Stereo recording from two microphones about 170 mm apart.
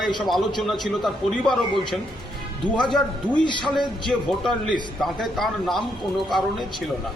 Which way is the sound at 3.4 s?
30° left (ahead or behind).